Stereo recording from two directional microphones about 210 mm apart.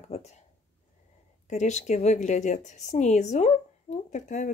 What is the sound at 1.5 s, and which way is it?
A woman's voice, 35° left (ahead or behind).